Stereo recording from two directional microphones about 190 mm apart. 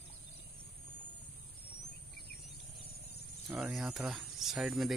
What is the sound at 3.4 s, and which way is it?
Cricket, 5° right (ahead or behind).